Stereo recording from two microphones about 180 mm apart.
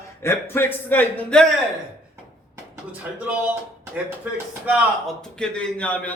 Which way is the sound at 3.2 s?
5° right (ahead or behind).